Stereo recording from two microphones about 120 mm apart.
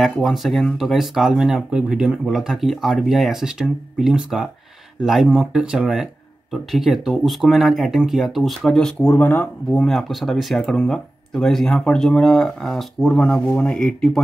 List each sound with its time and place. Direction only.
0.0 s speech: centre (ahead or behind)
9.1 s speech: 15° left (ahead or behind)
9.7 s speech: centre (ahead or behind)